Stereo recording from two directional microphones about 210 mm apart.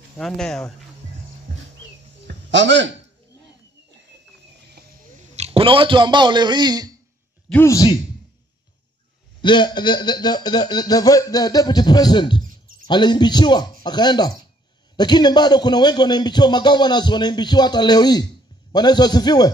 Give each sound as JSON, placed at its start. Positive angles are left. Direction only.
{"t": 0.2, "sound": "speech", "side_deg": 0}
{"t": 2.2, "sound": "a sound", "side_deg": -60}
{"t": 4.6, "sound": "cricket", "side_deg": -50}
{"t": 5.2, "sound": "a man's voice", "side_deg": -30}
{"t": 7.4, "sound": "speech", "side_deg": 10}
{"t": 9.4, "sound": "speech", "side_deg": 20}